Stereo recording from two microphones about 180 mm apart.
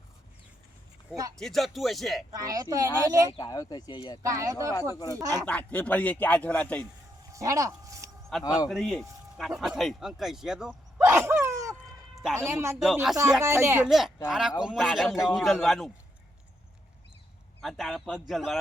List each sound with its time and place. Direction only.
1.4 s speech: centre (ahead or behind)
2.3 s a woman's voice: 20° right (ahead or behind)
3.3 s speech: 20° left (ahead or behind)
4.2 s a woman's voice: 15° right (ahead or behind)
5.5 s speech: 5° left (ahead or behind)
7.3 s a sound: 20° right (ahead or behind)
8.3 s speech: centre (ahead or behind)
11.0 s a sound: 10° right (ahead or behind)
12.1 s music: centre (ahead or behind)
12.4 s speech: 15° right (ahead or behind)
12.8 s speech: centre (ahead or behind)
13.4 s speech: 15° right (ahead or behind)
13.8 s speech: centre (ahead or behind)
17.6 s speech: centre (ahead or behind)